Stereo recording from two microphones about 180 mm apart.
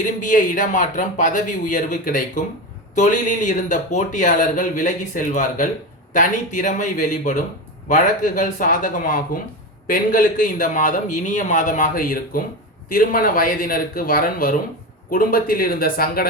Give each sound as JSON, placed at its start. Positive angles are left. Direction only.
{"t": 0.0, "sound": "speech", "side_deg": 45}